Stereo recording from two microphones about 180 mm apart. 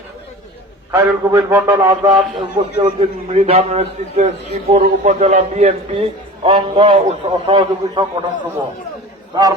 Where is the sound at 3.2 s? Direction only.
35° right (ahead or behind).